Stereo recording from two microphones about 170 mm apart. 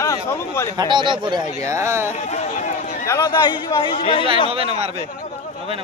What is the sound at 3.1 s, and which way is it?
Speech, 25° left (ahead or behind).